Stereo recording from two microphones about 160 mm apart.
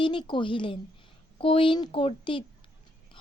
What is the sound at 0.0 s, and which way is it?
Speech, 30° left (ahead or behind).